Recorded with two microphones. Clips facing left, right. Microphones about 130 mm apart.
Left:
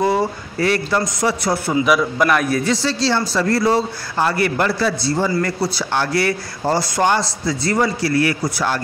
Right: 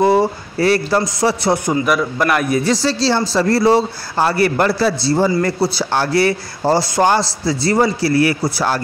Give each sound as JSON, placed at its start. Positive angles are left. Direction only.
{"t": 0.0, "sound": "a man's voice", "side_deg": -30}
{"t": 1.9, "sound": "a man's voice", "side_deg": 0}
{"t": 2.6, "sound": "a man's voice", "side_deg": -35}